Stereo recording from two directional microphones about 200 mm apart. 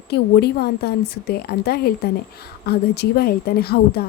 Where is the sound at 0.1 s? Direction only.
55° left (ahead or behind).